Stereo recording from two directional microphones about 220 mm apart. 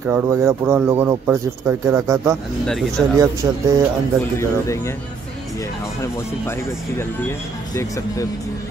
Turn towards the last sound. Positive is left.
turn(degrees=10)  # may be behind; listen again after turning